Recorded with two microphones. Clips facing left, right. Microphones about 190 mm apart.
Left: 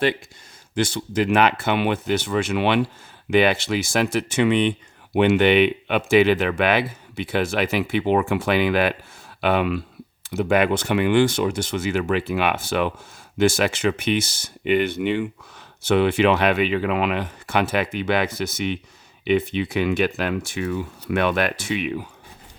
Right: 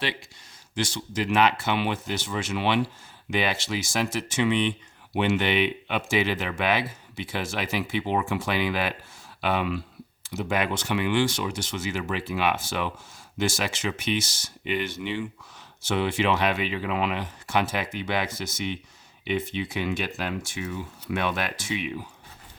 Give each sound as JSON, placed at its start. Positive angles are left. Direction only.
{"t": 0.8, "sound": "speech", "side_deg": 55}